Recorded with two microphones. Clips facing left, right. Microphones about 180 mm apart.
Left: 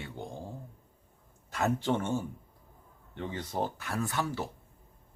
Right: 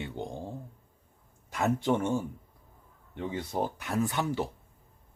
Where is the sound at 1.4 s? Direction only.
15° right (ahead or behind).